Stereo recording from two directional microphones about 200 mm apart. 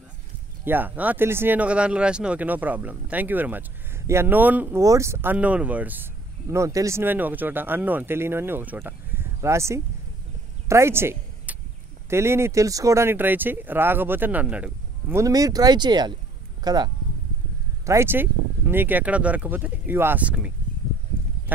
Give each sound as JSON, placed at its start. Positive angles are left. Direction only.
{"t": 0.7, "sound": "speech", "side_deg": -10}